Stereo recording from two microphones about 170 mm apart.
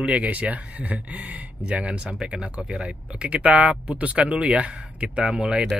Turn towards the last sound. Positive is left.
turn(degrees=-5)  # may be behind; listen again after turning